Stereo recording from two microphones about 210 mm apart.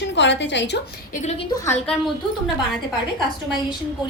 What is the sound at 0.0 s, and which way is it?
Speech, 55° left (ahead or behind).